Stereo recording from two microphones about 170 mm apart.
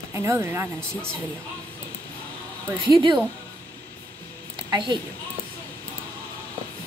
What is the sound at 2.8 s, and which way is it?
Speech, 30° right (ahead or behind).